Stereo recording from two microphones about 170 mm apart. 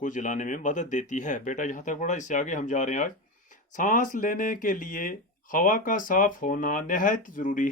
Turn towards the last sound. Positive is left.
turn(degrees=50)  # may be behind; listen again after turning